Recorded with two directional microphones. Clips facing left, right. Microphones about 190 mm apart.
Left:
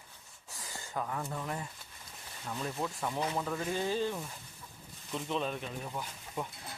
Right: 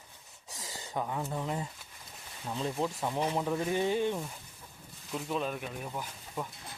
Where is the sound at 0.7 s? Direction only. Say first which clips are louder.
Right 2 dB; 20° right (ahead or behind).